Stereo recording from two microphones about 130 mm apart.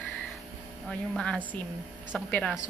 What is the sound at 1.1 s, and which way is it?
Speech, 5° left (ahead or behind).